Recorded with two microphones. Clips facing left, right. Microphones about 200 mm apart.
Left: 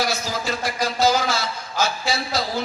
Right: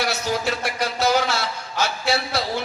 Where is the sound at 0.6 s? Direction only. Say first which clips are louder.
Left 2 dB; 65° right (ahead or behind).